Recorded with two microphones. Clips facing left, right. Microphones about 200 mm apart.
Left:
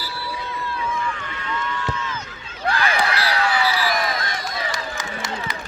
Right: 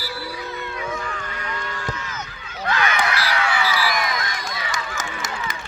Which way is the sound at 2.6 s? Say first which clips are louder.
Left 1 dB; 30° left (ahead or behind).